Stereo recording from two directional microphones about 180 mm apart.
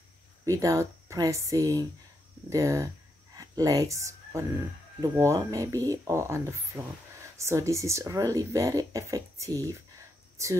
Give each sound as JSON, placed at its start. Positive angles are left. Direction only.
{"t": 0.5, "sound": "speech", "side_deg": -20}